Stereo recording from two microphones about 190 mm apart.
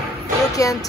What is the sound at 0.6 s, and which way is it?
Speech, 15° left (ahead or behind).